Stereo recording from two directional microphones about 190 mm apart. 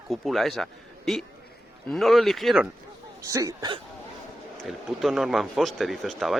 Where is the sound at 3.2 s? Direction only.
15° right (ahead or behind).